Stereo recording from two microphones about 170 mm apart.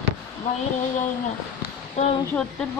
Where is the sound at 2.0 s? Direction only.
40° left (ahead or behind).